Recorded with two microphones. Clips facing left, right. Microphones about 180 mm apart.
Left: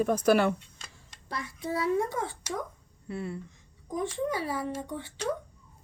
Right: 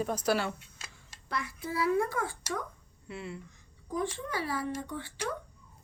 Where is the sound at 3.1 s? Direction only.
50° left (ahead or behind).